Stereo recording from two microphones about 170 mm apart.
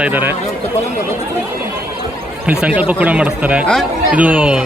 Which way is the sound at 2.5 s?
10° right (ahead or behind).